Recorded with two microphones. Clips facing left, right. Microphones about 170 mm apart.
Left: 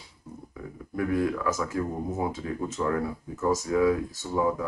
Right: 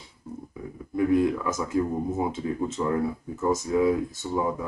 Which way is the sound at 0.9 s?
20° right (ahead or behind).